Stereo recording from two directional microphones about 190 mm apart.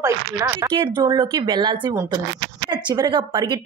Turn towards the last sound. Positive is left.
turn(degrees=-25)  # may be behind; listen again after turning